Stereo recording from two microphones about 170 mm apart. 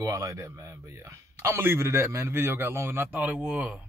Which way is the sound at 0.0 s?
20° right (ahead or behind).